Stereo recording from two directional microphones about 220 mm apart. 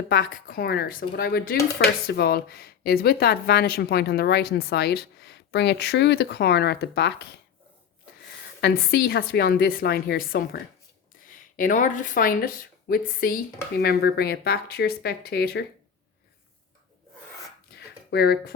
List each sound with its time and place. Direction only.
0.1 s speech: 40° left (ahead or behind)
8.6 s a woman's voice: 45° left (ahead or behind)
17.7 s a sound: 45° left (ahead or behind)